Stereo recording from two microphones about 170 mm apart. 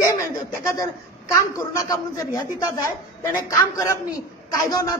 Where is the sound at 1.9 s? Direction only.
20° left (ahead or behind).